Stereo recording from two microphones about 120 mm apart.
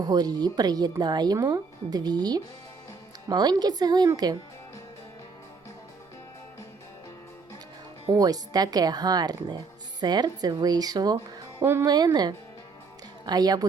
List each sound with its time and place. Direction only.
0.0 s speech: 35° right (ahead or behind)
8.1 s speech: 30° right (ahead or behind)
11.6 s speech: 20° right (ahead or behind)
11.9 s speech: 35° right (ahead or behind)